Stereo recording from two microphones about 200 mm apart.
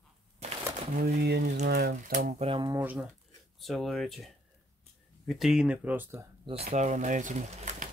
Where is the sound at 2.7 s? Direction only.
10° right (ahead or behind).